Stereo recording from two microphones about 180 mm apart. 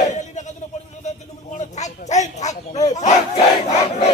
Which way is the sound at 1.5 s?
40° left (ahead or behind).